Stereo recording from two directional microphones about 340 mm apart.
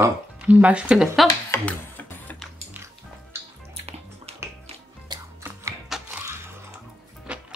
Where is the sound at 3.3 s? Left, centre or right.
Centre.